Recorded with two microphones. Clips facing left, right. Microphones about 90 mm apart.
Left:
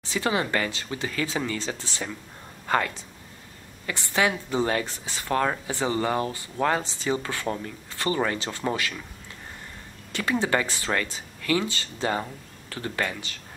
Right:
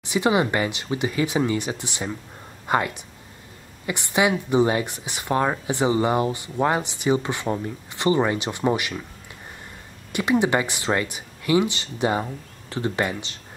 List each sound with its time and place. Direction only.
0.0 s speech: 15° right (ahead or behind)
10.1 s speech: 15° right (ahead or behind)